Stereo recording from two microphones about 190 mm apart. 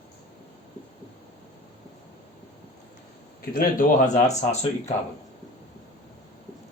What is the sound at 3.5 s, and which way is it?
Speech, 50° left (ahead or behind).